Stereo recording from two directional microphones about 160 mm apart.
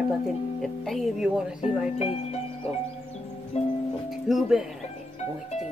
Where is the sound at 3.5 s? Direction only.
40° left (ahead or behind).